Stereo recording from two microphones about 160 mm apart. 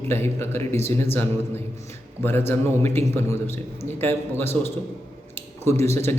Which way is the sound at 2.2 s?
15° left (ahead or behind).